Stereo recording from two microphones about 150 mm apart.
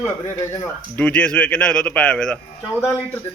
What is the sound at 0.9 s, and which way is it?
Speech, 10° left (ahead or behind).